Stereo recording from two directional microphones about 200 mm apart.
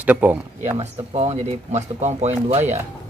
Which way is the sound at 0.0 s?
10° right (ahead or behind).